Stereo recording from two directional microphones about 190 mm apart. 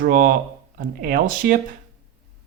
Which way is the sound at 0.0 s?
50° right (ahead or behind).